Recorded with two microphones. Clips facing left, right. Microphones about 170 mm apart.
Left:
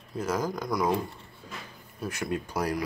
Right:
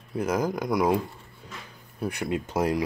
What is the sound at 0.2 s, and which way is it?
Speech, 10° right (ahead or behind).